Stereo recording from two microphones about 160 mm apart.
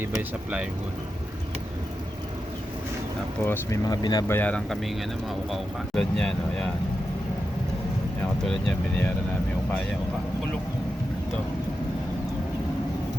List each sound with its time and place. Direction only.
0.0 s speech: 10° right (ahead or behind)
3.4 s speech: 15° left (ahead or behind)
4.4 s speech: 10° left (ahead or behind)
8.4 s speech: 5° left (ahead or behind)